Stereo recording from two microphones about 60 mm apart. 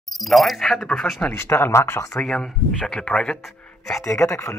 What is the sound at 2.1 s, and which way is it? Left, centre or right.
Speech, centre.